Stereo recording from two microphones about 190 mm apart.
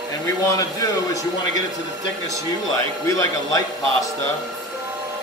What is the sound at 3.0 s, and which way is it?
Speech, 15° left (ahead or behind).